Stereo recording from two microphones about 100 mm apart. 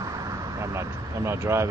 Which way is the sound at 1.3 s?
30° right (ahead or behind).